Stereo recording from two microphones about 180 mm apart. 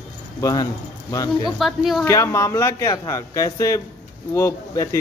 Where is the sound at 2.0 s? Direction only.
15° left (ahead or behind).